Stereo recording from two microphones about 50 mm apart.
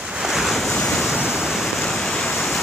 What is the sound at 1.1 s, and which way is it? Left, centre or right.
Waterfall, centre.